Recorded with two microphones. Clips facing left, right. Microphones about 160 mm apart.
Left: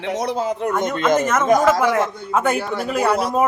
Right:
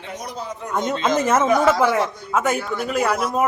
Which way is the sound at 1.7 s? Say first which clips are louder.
Left 1 dB; 15° left (ahead or behind).